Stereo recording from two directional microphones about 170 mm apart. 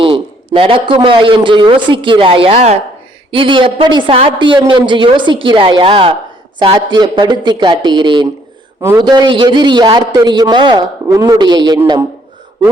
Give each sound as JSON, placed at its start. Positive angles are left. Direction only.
{"t": 0.0, "sound": "a man's voice", "side_deg": -30}